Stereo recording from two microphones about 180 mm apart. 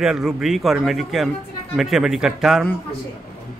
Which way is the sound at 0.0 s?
Centre (ahead or behind).